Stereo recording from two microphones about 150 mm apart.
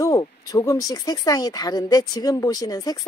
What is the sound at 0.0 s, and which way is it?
Speech, 25° left (ahead or behind).